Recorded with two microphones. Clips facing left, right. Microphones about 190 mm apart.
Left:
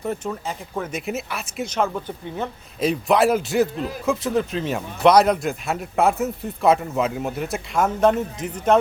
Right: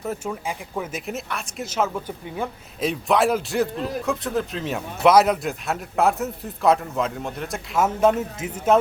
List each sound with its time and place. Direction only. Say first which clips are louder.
0.0 s a man's voice: left 1 dB; 5° right (ahead or behind)